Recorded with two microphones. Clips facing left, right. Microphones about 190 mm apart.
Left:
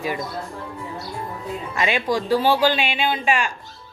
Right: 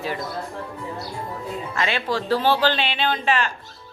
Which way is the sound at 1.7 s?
15° left (ahead or behind).